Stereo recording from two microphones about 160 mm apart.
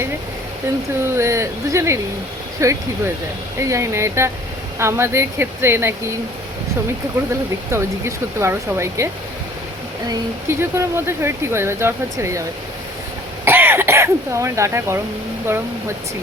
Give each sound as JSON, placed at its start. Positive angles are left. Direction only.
{"t": 1.1, "sound": "speech", "side_deg": -20}
{"t": 7.7, "sound": "speech", "side_deg": -15}
{"t": 10.1, "sound": "speech", "side_deg": -15}